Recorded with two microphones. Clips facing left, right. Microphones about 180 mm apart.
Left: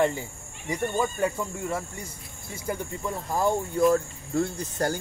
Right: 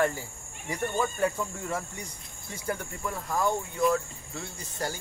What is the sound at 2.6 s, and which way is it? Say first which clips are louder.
Cricket: left 2 dB; 15° left (ahead or behind).